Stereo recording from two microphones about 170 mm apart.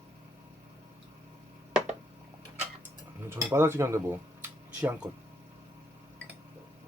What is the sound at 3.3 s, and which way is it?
Dishes, 15° right (ahead or behind).